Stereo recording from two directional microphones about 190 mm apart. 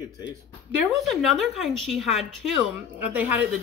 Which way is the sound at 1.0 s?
Centre (ahead or behind).